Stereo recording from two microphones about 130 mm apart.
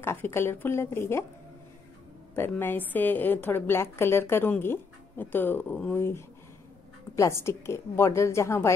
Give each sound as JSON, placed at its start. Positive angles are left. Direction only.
{"t": 0.0, "sound": "a woman's voice", "side_deg": 20}
{"t": 2.3, "sound": "a woman's voice", "side_deg": 15}